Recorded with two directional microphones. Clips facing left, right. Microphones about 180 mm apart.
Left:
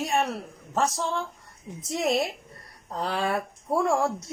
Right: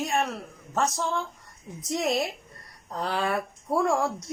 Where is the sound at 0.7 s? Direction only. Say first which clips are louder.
Left 1 dB; 10° left (ahead or behind).